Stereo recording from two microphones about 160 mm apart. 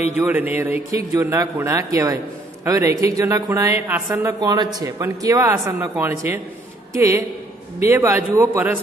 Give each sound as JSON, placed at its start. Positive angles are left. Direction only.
{"t": 0.1, "sound": "a man's voice", "side_deg": -10}
{"t": 4.4, "sound": "a woman's voice", "side_deg": -25}